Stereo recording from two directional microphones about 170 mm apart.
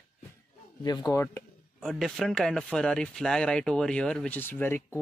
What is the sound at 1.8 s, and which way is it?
Speech, centre (ahead or behind).